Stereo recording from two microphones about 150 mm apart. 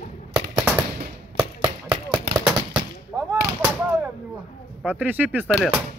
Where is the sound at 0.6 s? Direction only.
5° right (ahead or behind).